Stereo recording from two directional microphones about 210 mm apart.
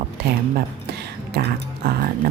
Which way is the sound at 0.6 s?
50° right (ahead or behind).